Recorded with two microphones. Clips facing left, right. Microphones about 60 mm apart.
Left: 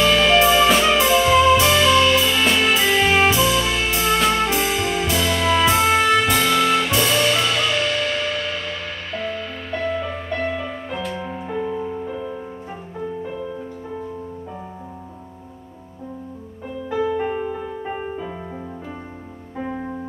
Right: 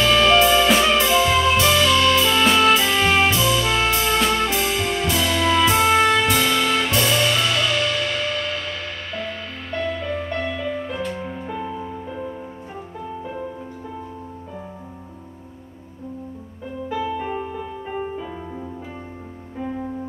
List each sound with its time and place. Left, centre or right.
0.0 s music: centre
2.2 s music: centre
10.4 s music: centre